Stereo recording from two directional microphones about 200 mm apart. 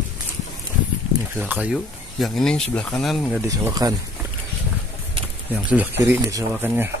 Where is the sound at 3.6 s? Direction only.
15° right (ahead or behind).